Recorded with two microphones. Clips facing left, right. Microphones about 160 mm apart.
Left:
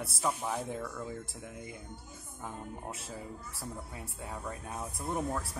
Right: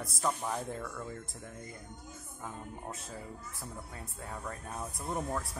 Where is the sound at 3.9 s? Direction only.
10° left (ahead or behind).